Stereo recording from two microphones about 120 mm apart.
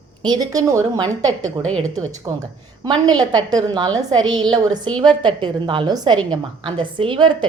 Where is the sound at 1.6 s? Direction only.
10° left (ahead or behind).